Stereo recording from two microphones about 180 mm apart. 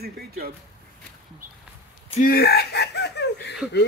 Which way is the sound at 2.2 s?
55° left (ahead or behind).